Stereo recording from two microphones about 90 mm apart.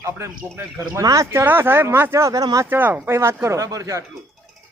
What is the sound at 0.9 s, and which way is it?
Speech, 35° right (ahead or behind).